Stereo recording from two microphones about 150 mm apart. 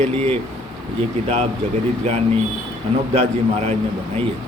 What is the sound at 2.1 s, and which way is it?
A man's voice, 45° right (ahead or behind).